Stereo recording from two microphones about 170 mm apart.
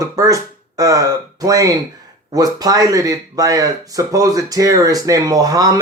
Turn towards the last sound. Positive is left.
turn(degrees=-20)  # may be behind; listen again after turning